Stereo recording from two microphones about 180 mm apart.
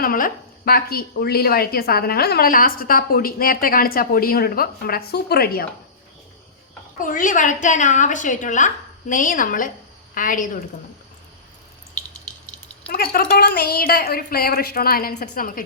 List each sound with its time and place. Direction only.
0.0 s a woman's voice: 50° left (ahead or behind)
7.0 s a woman's voice: 45° left (ahead or behind)
12.9 s a woman's voice: 55° left (ahead or behind)